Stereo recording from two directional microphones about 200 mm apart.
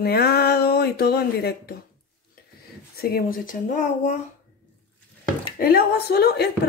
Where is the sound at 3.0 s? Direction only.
50° left (ahead or behind).